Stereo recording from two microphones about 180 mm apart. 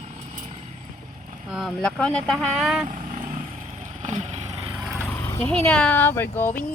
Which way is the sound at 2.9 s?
50° right (ahead or behind).